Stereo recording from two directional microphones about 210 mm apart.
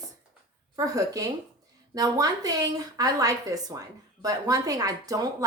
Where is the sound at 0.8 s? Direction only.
15° right (ahead or behind).